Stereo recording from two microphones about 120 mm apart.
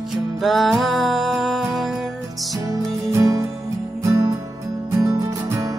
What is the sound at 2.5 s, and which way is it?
Music, 25° right (ahead or behind).